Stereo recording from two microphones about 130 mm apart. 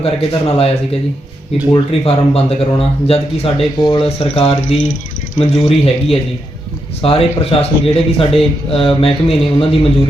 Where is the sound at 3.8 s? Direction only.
40° left (ahead or behind).